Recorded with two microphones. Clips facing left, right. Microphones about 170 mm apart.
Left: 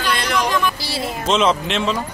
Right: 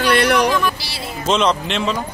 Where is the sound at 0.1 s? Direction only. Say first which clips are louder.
Right 6 dB; 65° right (ahead or behind).